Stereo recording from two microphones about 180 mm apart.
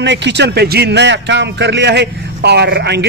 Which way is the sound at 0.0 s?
75° right (ahead or behind).